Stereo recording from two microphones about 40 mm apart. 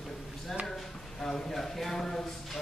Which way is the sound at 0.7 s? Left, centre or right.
Centre.